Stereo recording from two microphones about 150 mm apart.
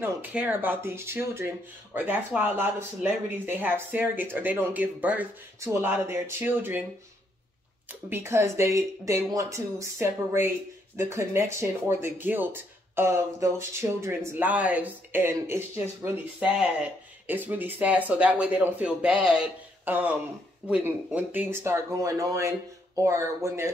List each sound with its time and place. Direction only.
0.0 s speech: 10° right (ahead or behind)
7.9 s speech: 15° right (ahead or behind)
16.3 s speech: 5° right (ahead or behind)